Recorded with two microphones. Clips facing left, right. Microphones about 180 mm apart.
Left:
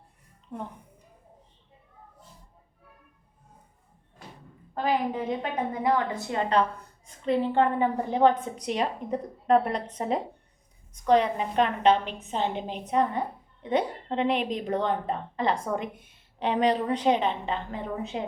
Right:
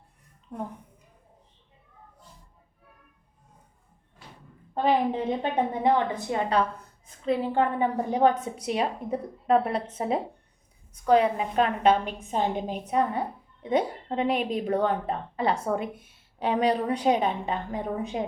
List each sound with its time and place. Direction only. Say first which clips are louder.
4.7 s a woman's voice: right 3 dB; 25° right (ahead or behind)